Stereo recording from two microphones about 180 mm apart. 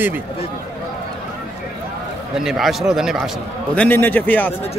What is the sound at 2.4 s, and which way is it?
A man's voice, centre (ahead or behind).